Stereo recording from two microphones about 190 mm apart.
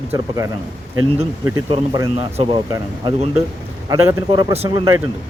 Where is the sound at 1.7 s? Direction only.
20° right (ahead or behind).